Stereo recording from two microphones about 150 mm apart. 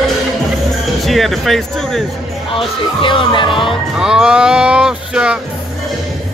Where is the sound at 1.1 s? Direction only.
Centre (ahead or behind).